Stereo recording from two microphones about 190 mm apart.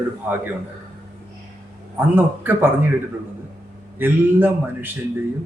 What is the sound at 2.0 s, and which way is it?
Speech, 10° right (ahead or behind).